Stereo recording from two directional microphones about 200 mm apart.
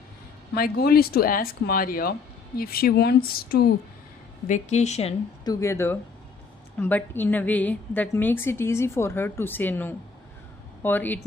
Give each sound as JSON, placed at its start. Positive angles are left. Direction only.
{"t": 0.5, "sound": "speech", "side_deg": 50}
{"t": 4.4, "sound": "a woman's voice", "side_deg": 35}
{"t": 5.5, "sound": "a woman's voice", "side_deg": 15}